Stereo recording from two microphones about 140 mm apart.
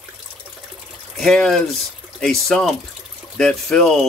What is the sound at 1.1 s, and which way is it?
Speech, 5° left (ahead or behind).